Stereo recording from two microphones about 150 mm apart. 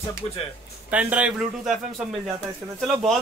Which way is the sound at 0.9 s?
10° right (ahead or behind).